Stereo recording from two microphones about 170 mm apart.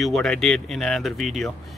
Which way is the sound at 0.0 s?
Centre (ahead or behind).